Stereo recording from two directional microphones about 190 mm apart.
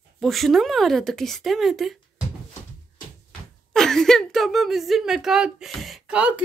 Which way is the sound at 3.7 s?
Centre (ahead or behind).